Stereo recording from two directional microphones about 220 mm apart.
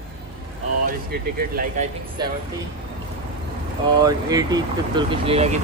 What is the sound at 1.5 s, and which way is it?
Speech, 40° right (ahead or behind).